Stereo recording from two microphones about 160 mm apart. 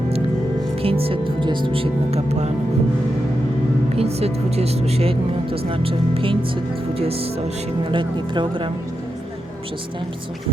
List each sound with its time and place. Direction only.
0.8 s speech: 35° right (ahead or behind)
3.9 s speech: 40° right (ahead or behind)
7.9 s speech: 30° right (ahead or behind)